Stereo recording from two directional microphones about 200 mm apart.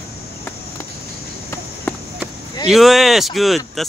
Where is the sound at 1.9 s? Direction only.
10° left (ahead or behind).